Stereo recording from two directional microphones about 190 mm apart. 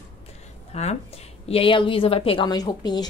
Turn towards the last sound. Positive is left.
turn(degrees=20)  # may be behind; listen again after turning